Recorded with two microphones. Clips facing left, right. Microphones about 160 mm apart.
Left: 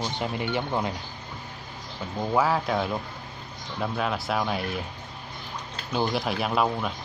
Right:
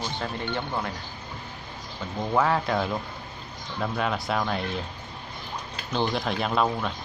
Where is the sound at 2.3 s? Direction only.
5° left (ahead or behind).